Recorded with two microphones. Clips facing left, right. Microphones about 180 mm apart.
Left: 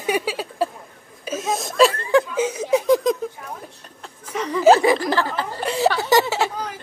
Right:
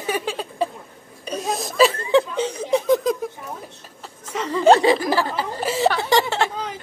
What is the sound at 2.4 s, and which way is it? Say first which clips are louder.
Chuckle: left 1 dB; 10° left (ahead or behind).